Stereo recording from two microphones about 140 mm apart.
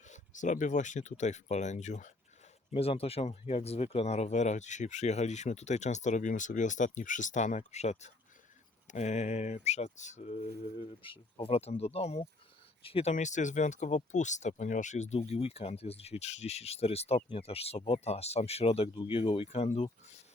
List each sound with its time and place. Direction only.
0.1 s speech: 65° left (ahead or behind)
2.7 s speech: 45° left (ahead or behind)